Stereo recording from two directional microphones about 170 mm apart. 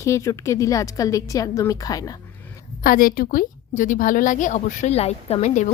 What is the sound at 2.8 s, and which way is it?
A woman's voice, 55° left (ahead or behind).